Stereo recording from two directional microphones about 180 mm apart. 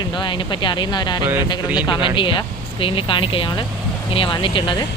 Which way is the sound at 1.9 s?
25° left (ahead or behind).